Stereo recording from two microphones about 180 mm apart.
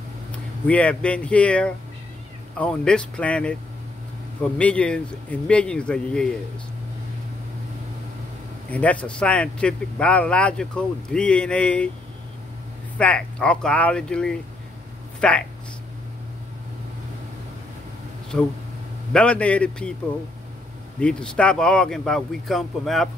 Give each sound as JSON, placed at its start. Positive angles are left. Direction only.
{"t": 0.7, "sound": "speech", "side_deg": 5}
{"t": 8.6, "sound": "speech", "side_deg": 10}
{"t": 12.9, "sound": "speech", "side_deg": 5}
{"t": 18.3, "sound": "speech", "side_deg": 5}
{"t": 21.0, "sound": "speech", "side_deg": 5}